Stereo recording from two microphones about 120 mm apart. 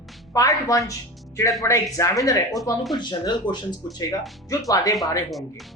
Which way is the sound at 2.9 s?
40° left (ahead or behind).